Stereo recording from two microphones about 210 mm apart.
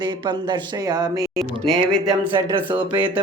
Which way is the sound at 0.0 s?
20° right (ahead or behind).